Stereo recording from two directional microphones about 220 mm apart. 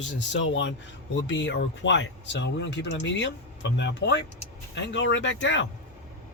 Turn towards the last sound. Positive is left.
turn(degrees=55)  # may be behind; listen again after turning